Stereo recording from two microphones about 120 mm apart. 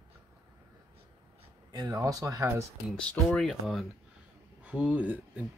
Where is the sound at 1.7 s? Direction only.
30° right (ahead or behind).